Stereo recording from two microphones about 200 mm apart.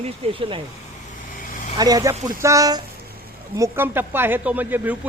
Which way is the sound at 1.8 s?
20° right (ahead or behind).